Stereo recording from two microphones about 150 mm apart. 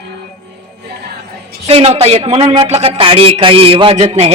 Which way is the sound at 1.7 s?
40° right (ahead or behind).